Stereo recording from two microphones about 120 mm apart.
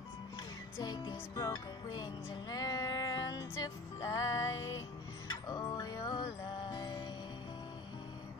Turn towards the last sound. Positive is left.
turn(degrees=40)  # may be behind; listen again after turning